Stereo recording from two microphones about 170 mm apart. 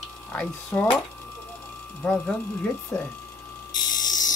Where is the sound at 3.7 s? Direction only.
25° left (ahead or behind).